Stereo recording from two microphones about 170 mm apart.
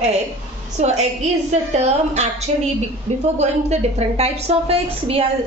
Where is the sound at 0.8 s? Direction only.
45° right (ahead or behind).